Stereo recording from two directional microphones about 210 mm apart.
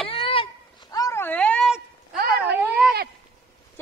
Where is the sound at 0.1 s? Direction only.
25° left (ahead or behind).